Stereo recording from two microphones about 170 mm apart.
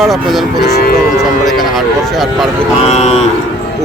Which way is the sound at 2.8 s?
40° left (ahead or behind).